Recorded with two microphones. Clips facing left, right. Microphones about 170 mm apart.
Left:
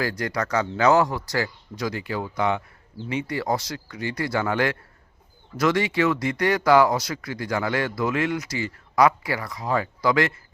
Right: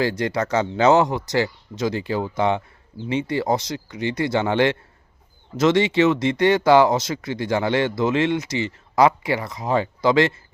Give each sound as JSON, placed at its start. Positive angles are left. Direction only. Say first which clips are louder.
{"t": 0.0, "sound": "speech", "louder": "right 4 dB", "side_deg": -25}